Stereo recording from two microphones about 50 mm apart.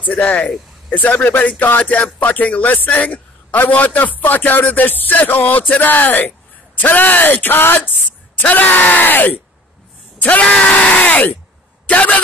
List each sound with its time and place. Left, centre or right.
0.1 s a man's voice: left
10.1 s yell: left
10.4 s speech: left